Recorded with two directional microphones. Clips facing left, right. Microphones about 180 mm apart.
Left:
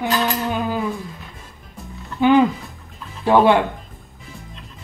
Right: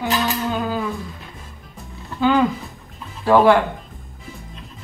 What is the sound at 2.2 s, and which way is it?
Speech, 15° left (ahead or behind).